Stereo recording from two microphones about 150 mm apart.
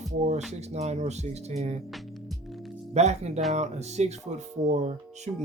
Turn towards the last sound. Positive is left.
turn(degrees=-50)  # may be behind; listen again after turning